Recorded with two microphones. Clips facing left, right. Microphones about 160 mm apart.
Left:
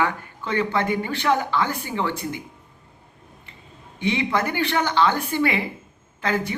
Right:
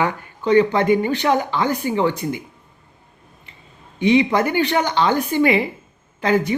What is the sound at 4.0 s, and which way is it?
Speech, 15° right (ahead or behind).